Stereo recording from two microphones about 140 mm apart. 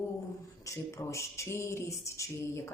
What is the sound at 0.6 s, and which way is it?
A woman's voice, 20° left (ahead or behind).